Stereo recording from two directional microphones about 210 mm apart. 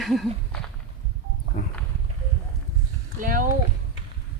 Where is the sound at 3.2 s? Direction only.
40° right (ahead or behind).